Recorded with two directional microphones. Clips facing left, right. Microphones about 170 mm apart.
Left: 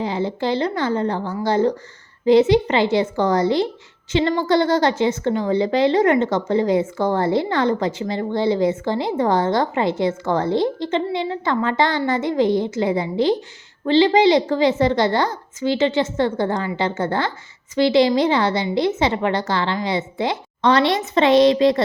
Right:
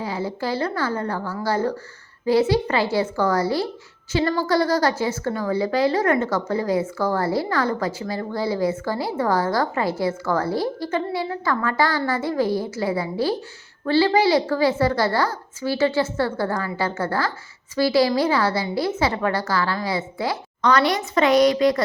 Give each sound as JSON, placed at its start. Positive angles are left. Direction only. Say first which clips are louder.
{"t": 0.0, "sound": "a woman's voice", "louder": "left 4 dB", "side_deg": 20}